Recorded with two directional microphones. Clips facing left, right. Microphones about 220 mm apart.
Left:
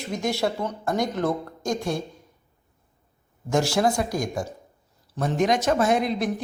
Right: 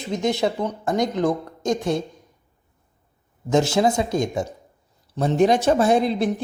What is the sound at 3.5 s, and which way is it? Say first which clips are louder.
Speech: right 3 dB; 20° right (ahead or behind).